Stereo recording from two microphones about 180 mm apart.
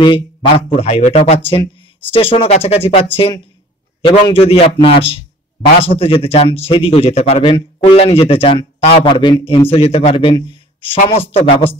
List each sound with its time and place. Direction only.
0.0 s speech: 25° left (ahead or behind)